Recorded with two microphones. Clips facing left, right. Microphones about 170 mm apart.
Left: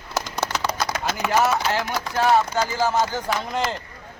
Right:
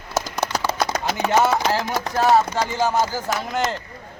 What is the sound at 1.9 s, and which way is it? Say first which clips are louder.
Speech: right 2 dB; 45° right (ahead or behind).